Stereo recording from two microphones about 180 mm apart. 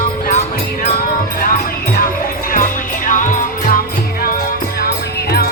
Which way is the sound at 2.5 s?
50° left (ahead or behind).